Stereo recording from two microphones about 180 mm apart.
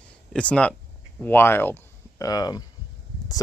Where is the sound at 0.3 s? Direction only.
5° left (ahead or behind).